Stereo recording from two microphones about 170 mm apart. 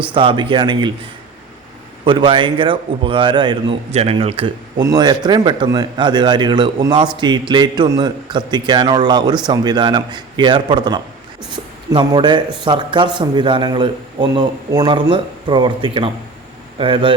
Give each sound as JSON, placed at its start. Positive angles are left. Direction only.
{"t": 0.1, "sound": "a man's voice", "side_deg": -30}
{"t": 2.0, "sound": "a man's voice", "side_deg": -30}